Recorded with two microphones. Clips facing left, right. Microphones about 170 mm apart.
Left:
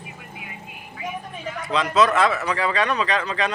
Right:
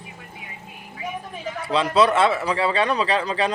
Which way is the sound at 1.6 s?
30° right (ahead or behind).